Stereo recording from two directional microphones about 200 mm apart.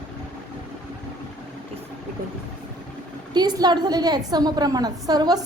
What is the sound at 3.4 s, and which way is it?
A woman's voice, 20° right (ahead or behind).